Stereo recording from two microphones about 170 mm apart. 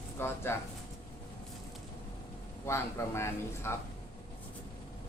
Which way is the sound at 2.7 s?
15° left (ahead or behind).